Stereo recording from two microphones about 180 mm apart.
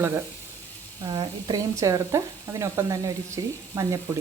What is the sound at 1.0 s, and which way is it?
Speech, 25° right (ahead or behind).